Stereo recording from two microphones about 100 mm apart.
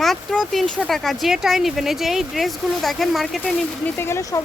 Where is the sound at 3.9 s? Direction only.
25° left (ahead or behind).